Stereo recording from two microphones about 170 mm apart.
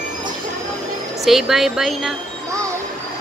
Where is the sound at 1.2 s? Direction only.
Centre (ahead or behind).